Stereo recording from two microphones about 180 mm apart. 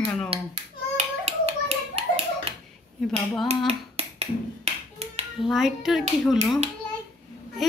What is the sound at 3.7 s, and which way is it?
Finger snapping, 35° right (ahead or behind).